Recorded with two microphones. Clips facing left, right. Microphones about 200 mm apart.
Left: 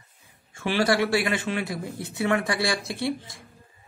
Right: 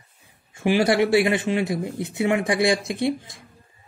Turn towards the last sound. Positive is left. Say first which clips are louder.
# right 4 dB
turn(degrees=-20)  # may be behind; listen again after turning